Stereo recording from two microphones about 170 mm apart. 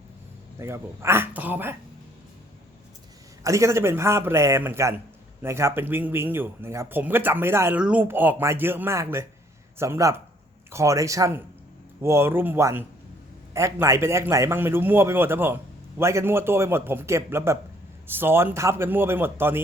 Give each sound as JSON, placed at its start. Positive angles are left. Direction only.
{"t": 0.6, "sound": "speech", "side_deg": -15}
{"t": 3.4, "sound": "speech", "side_deg": -20}